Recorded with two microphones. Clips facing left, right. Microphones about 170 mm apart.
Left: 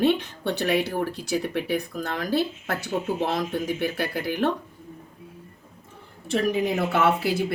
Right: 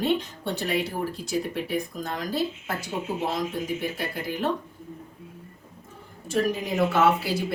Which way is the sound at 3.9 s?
65° left (ahead or behind).